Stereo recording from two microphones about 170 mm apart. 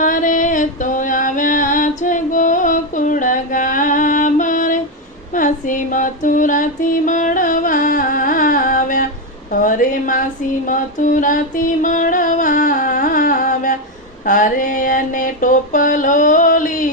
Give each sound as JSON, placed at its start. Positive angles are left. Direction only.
{"t": 0.0, "sound": "music", "side_deg": 50}
{"t": 5.3, "sound": "female singing", "side_deg": 50}
{"t": 9.5, "sound": "a sound", "side_deg": 55}